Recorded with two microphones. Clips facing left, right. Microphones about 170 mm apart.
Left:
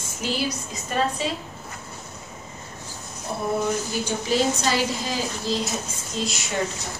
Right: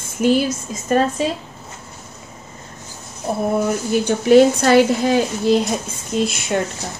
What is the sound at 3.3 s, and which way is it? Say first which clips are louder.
A woman's voice: right 6 dB; 55° right (ahead or behind).